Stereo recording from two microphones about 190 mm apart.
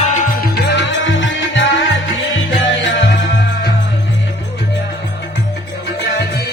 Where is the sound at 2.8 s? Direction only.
75° left (ahead or behind).